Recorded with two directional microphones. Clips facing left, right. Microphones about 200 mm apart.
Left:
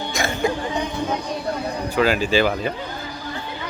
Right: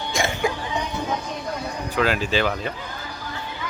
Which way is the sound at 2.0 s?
Centre (ahead or behind).